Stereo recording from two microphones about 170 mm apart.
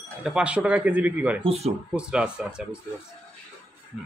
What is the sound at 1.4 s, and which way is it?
Speech, 35° right (ahead or behind).